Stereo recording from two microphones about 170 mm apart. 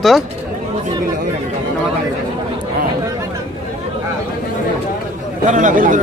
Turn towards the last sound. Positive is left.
turn(degrees=-50)  # may be behind; listen again after turning